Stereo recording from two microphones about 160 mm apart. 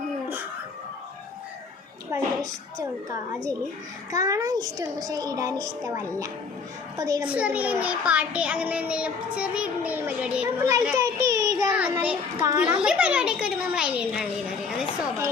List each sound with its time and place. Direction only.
2.1 s a woman's voice: 20° right (ahead or behind)
7.3 s a child's voice: 10° right (ahead or behind)
10.6 s a child's voice: 20° right (ahead or behind)
10.9 s child singing: 20° right (ahead or behind)
11.7 s child singing: 10° right (ahead or behind)
12.0 s a child's voice: 10° right (ahead or behind)